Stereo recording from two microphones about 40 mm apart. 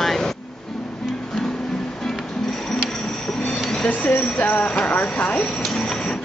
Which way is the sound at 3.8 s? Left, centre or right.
Left.